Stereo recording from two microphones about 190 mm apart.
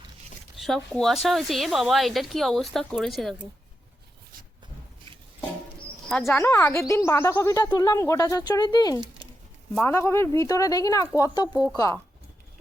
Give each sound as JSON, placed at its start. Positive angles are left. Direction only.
{"t": 0.5, "sound": "a woman's voice", "side_deg": 0}
{"t": 6.1, "sound": "a woman's voice", "side_deg": 0}
{"t": 6.4, "sound": "speech", "side_deg": 15}
{"t": 9.7, "sound": "speech", "side_deg": 10}